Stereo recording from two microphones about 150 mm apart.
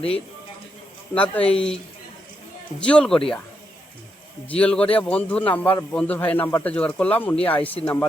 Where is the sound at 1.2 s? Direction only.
10° left (ahead or behind).